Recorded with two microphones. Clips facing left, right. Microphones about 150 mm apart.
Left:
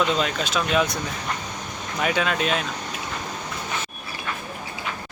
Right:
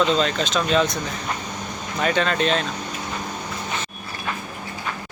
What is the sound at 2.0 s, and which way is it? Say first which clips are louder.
Speech: right 2 dB; 10° left (ahead or behind).